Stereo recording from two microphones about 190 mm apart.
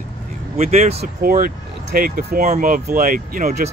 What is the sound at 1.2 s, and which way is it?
Speech, 50° right (ahead or behind).